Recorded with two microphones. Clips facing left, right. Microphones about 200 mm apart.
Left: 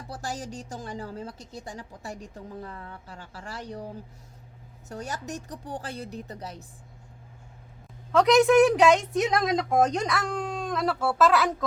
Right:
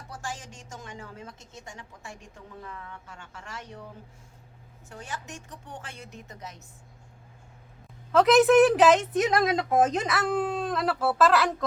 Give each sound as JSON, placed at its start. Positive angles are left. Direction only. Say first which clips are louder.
{"t": 0.1, "sound": "a woman's voice", "louder": "left 4 dB", "side_deg": 40}
{"t": 8.1, "sound": "a woman's voice", "louder": "even", "side_deg": 0}